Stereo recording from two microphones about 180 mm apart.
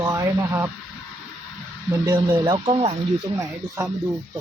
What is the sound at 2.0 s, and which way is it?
Speech, 25° right (ahead or behind).